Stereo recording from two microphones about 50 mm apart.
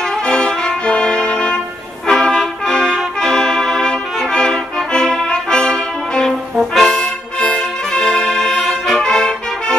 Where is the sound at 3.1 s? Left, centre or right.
Centre.